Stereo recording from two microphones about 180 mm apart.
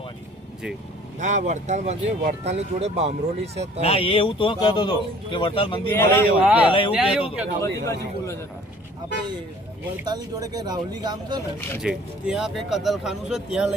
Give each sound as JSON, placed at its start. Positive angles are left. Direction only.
{"t": 1.2, "sound": "speech", "side_deg": -40}
{"t": 3.8, "sound": "speech", "side_deg": 35}
{"t": 5.9, "sound": "a man's voice", "side_deg": 15}
{"t": 6.4, "sound": "speech", "side_deg": -10}
{"t": 7.6, "sound": "a man's voice", "side_deg": 15}
{"t": 10.1, "sound": "speech", "side_deg": -20}
{"t": 11.8, "sound": "speech", "side_deg": -5}